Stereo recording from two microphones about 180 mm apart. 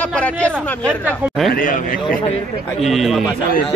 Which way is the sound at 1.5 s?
50° left (ahead or behind).